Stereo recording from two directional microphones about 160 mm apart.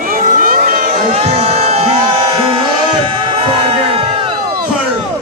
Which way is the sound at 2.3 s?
35° right (ahead or behind).